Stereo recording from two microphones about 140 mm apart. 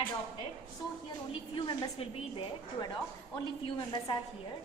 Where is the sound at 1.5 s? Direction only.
35° left (ahead or behind).